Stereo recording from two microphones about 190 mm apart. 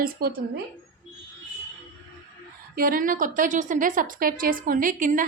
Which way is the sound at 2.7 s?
50° right (ahead or behind).